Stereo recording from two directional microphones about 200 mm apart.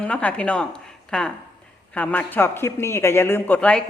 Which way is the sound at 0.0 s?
5° left (ahead or behind).